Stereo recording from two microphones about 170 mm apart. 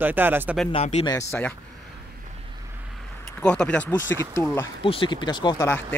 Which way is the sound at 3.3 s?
5° left (ahead or behind).